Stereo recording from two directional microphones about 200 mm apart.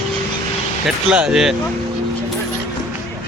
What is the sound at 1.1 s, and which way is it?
Speech, 5° right (ahead or behind).